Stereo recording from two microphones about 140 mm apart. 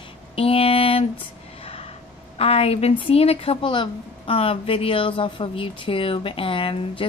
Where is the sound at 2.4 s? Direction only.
45° left (ahead or behind).